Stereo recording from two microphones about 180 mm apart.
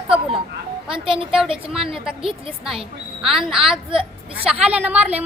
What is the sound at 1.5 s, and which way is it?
Speech, centre (ahead or behind).